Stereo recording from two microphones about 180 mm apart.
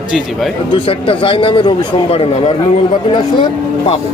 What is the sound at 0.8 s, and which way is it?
Speech, 30° left (ahead or behind).